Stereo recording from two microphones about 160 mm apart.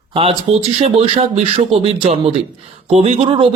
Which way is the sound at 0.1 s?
35° right (ahead or behind).